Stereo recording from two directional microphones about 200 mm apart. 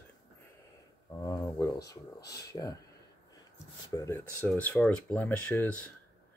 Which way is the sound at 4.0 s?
10° left (ahead or behind).